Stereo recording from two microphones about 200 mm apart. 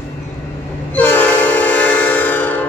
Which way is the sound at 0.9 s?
10° left (ahead or behind).